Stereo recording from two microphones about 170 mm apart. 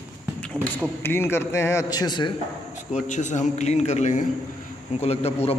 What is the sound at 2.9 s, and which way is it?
A man's voice, 45° left (ahead or behind).